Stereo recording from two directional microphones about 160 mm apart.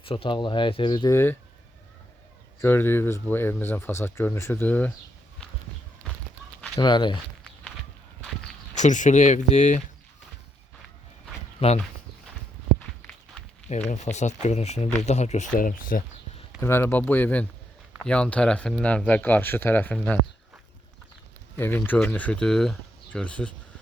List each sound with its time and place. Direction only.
0.0 s speech: 35° left (ahead or behind)
1.1 s speech: 15° left (ahead or behind)
2.6 s speech: 15° left (ahead or behind)
6.7 s speech: 30° left (ahead or behind)
8.7 s speech: 50° left (ahead or behind)
11.6 s speech: 35° left (ahead or behind)
13.9 s speech: 45° left (ahead or behind)
15.5 s speech: 60° left (ahead or behind)
16.6 s speech: 15° left (ahead or behind)
21.6 s speech: 10° left (ahead or behind)